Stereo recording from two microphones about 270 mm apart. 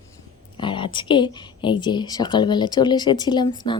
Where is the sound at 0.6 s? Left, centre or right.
Centre.